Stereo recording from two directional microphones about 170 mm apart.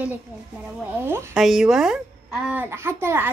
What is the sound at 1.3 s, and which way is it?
Speech, centre (ahead or behind).